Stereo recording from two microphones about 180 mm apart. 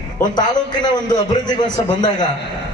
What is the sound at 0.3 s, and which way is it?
A man's voice, 25° left (ahead or behind).